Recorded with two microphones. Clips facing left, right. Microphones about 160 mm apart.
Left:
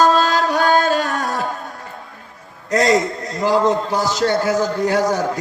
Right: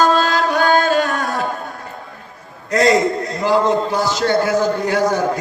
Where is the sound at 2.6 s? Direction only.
40° left (ahead or behind).